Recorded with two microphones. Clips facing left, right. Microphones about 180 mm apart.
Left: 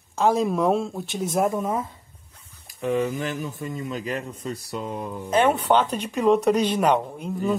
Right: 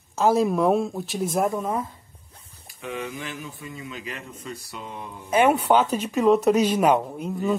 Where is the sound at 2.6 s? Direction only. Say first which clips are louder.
Left 9 dB; 40° left (ahead or behind).